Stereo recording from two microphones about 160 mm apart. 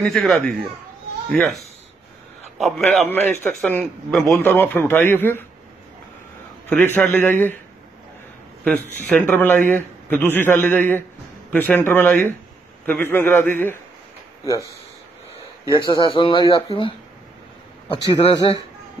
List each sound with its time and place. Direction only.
0.0 s speech: centre (ahead or behind)
2.6 s speech: centre (ahead or behind)
3.1 s a man's voice: 10° left (ahead or behind)
3.8 s a man's voice: centre (ahead or behind)
6.7 s a man's voice: 10° left (ahead or behind)
8.6 s a man's voice: 10° left (ahead or behind)
15.6 s speech: 20° right (ahead or behind)
16.1 s speech: 30° left (ahead or behind)